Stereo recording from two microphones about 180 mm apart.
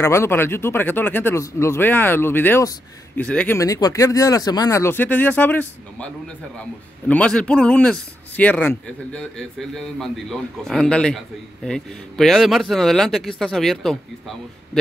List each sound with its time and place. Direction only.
0.0 s speech: 15° left (ahead or behind)
3.5 s a man's voice: 20° left (ahead or behind); by 13.9 s centre (ahead or behind)